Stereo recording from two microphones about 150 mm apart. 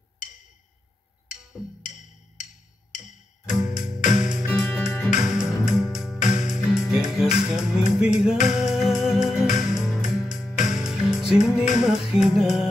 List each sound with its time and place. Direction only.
2.9 s music: 55° left (ahead or behind)
4.5 s music: 15° left (ahead or behind)
5.2 s music: 5° right (ahead or behind)
6.2 s music: 55° left (ahead or behind)
6.5 s music: 5° right (ahead or behind)
8.4 s music: 55° left (ahead or behind)
8.6 s music: 5° right (ahead or behind)